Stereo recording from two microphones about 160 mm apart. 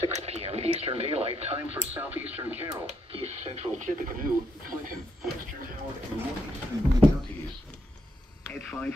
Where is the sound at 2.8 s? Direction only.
40° right (ahead or behind); by 5.0 s 60° right (ahead or behind).